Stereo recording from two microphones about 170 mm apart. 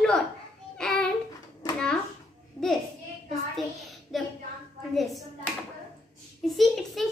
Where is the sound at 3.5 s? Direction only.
Centre (ahead or behind).